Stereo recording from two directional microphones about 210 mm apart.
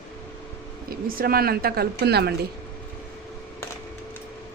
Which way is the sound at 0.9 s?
45° right (ahead or behind).